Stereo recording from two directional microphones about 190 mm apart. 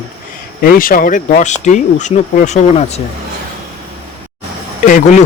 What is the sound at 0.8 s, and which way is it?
Speech, 45° left (ahead or behind).